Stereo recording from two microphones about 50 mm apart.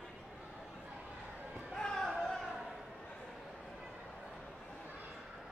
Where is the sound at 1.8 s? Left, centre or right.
Centre.